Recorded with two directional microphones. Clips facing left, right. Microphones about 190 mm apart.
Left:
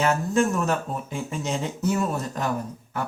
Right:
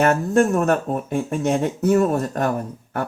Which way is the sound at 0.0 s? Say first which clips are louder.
Right 5 dB; 55° right (ahead or behind).